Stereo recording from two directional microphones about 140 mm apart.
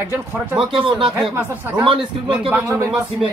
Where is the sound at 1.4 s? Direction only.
15° right (ahead or behind).